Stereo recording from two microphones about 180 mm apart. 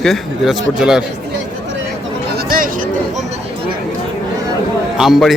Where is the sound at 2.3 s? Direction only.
50° right (ahead or behind).